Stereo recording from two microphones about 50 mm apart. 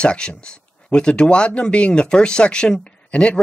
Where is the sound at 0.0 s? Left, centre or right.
Centre.